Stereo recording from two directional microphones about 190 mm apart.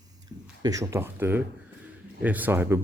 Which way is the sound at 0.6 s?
15° right (ahead or behind).